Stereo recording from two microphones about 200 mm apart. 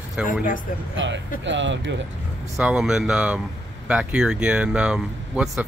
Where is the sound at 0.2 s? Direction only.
5° right (ahead or behind).